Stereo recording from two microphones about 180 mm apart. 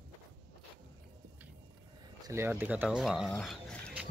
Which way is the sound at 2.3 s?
10° right (ahead or behind).